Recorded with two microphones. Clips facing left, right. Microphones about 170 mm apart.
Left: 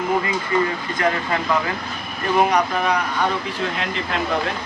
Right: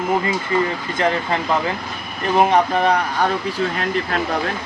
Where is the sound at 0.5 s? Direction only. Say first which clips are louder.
Left 1 dB; 25° right (ahead or behind).